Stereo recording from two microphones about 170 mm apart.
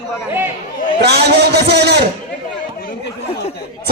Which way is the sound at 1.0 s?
75° right (ahead or behind).